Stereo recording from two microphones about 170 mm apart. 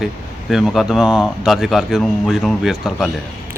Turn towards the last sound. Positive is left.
turn(degrees=0)  # may be behind; listen again after turning